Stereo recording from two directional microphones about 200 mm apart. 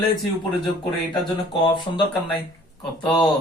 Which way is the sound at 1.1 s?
25° left (ahead or behind).